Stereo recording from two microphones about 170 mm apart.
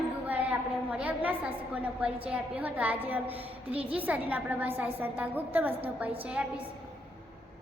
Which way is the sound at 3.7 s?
35° right (ahead or behind).